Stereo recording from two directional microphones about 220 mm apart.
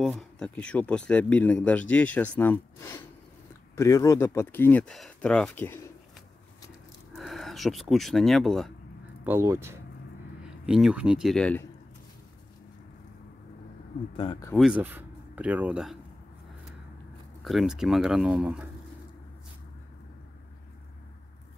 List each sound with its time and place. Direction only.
0.0 s speech: centre (ahead or behind)
7.2 s speech: centre (ahead or behind)
9.2 s speech: 10° right (ahead or behind)
14.1 s speech: 25° left (ahead or behind)
14.5 s speech: centre (ahead or behind)
17.4 s speech: centre (ahead or behind)